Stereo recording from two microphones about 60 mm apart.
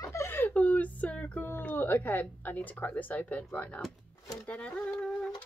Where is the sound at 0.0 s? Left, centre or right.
Left.